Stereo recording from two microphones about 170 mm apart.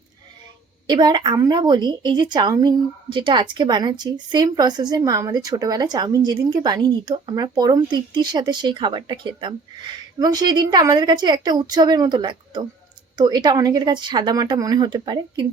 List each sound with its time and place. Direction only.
0.9 s a woman's voice: 25° right (ahead or behind)